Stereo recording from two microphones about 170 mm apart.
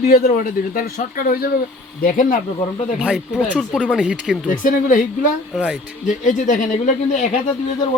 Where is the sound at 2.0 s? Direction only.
55° left (ahead or behind).